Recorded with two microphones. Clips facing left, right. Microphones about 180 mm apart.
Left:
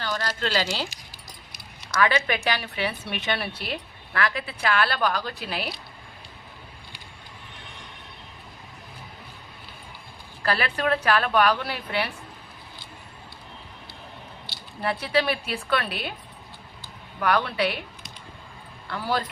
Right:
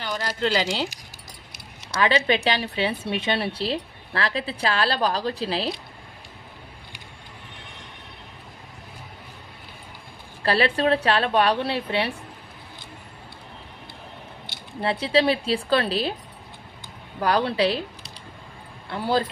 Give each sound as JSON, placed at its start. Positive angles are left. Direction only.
{"t": 0.0, "sound": "a woman's voice", "side_deg": -15}
{"t": 10.4, "sound": "a woman's voice", "side_deg": -30}
{"t": 14.4, "sound": "speech", "side_deg": -20}
{"t": 17.2, "sound": "a woman's voice", "side_deg": -30}